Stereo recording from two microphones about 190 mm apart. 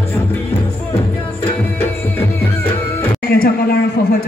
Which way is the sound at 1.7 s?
10° left (ahead or behind).